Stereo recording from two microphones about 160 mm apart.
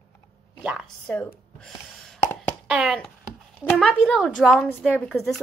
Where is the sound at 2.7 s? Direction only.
5° right (ahead or behind).